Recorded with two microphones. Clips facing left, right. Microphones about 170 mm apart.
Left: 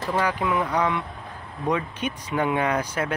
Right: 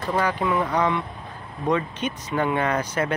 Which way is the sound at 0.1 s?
5° left (ahead or behind).